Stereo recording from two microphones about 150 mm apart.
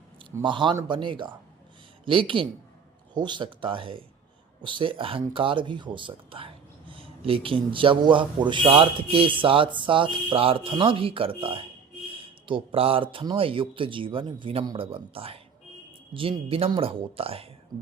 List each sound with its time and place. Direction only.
0.4 s speech: 30° right (ahead or behind)